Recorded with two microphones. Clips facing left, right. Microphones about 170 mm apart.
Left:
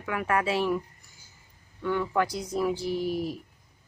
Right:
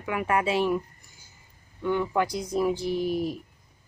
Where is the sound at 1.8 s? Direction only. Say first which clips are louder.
Right 1 dB; 15° right (ahead or behind).